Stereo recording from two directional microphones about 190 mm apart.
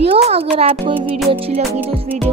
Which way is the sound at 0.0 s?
30° right (ahead or behind).